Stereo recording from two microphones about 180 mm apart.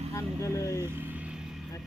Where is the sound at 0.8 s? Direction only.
10° right (ahead or behind).